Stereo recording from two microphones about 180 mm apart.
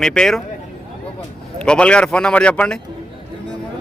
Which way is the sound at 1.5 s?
5° left (ahead or behind).